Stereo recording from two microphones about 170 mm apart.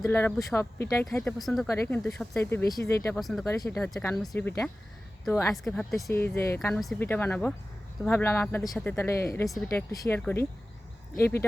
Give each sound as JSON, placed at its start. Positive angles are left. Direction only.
{"t": 0.0, "sound": "speech", "side_deg": 10}
{"t": 1.6, "sound": "speech", "side_deg": 15}
{"t": 3.2, "sound": "speech", "side_deg": 0}
{"t": 3.4, "sound": "speech", "side_deg": 15}
{"t": 4.1, "sound": "speech", "side_deg": 0}
{"t": 5.6, "sound": "speech", "side_deg": 0}
{"t": 6.1, "sound": "speech", "side_deg": 15}